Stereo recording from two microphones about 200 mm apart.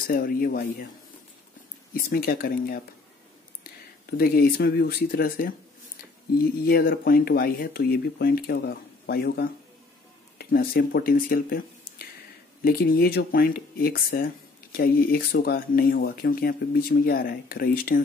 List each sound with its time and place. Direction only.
0.0 s speech: 45° left (ahead or behind)
2.0 s speech: 50° left (ahead or behind)